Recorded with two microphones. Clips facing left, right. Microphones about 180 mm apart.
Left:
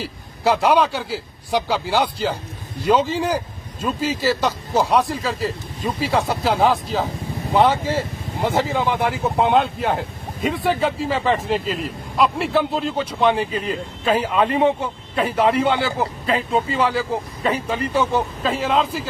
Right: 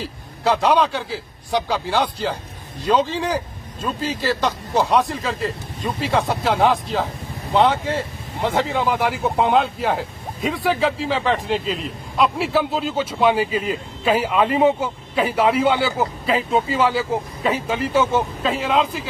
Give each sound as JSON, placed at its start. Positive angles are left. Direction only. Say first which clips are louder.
{"t": 0.0, "sound": "speech", "louder": "left 1 dB", "side_deg": 5}